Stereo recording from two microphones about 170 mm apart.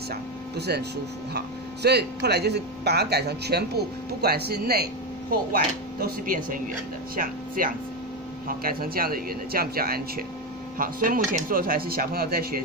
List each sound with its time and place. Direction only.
0.1 s speech: 75° right (ahead or behind)